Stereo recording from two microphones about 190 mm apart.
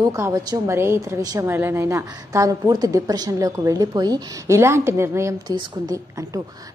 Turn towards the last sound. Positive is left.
turn(degrees=-15)  # may be behind; listen again after turning